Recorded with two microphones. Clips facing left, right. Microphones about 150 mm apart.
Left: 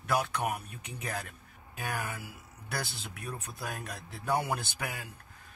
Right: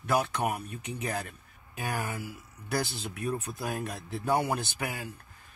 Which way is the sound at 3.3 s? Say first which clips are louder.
Right 7 dB; 5° right (ahead or behind).